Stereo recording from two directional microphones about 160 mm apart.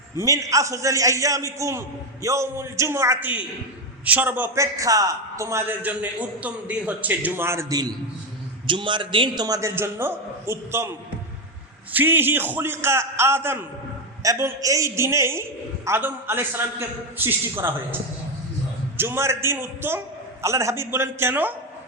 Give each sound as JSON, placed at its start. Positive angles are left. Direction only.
{"t": 0.2, "sound": "a man's voice", "side_deg": -20}
{"t": 11.9, "sound": "a man's voice", "side_deg": -15}
{"t": 18.9, "sound": "a man's voice", "side_deg": -15}